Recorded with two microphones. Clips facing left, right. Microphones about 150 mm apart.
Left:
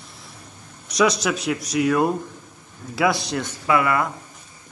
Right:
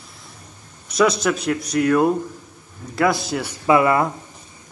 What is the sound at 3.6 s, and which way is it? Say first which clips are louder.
Speech: right 4 dB; 25° right (ahead or behind).